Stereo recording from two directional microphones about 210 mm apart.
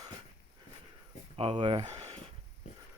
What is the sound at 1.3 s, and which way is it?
Speech, 25° right (ahead or behind).